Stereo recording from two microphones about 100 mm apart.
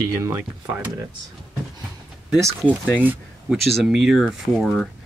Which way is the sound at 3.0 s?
15° right (ahead or behind).